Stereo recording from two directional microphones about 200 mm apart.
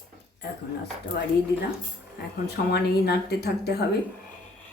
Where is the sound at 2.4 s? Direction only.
55° left (ahead or behind).